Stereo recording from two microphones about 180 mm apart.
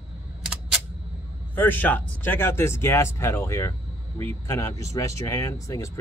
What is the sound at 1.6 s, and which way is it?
Speech, 10° left (ahead or behind).